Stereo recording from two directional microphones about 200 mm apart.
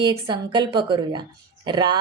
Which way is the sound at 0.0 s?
20° right (ahead or behind).